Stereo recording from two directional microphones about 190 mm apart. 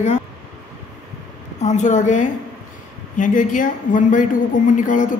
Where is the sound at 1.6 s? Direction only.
40° left (ahead or behind).